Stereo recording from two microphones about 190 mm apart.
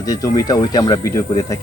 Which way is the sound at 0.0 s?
20° left (ahead or behind).